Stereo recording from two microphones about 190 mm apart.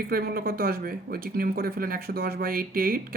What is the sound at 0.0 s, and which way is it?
Speech, 50° right (ahead or behind).